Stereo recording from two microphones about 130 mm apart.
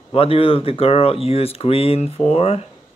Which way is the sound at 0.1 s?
45° left (ahead or behind).